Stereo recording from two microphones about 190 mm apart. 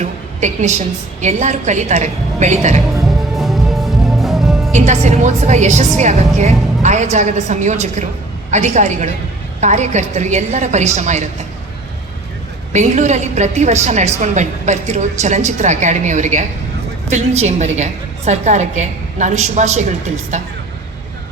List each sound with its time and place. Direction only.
0.0 s a sound: 40° right (ahead or behind)
1.2 s a woman's voice: 40° right (ahead or behind)
3.0 s music: centre (ahead or behind)
4.7 s a woman's voice: 40° right (ahead or behind)
12.7 s a woman's voice: 40° right (ahead or behind)